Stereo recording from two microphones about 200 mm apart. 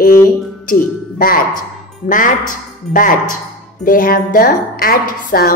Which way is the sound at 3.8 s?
45° left (ahead or behind).